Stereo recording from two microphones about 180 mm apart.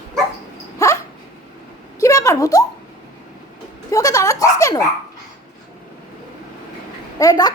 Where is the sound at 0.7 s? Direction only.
15° left (ahead or behind).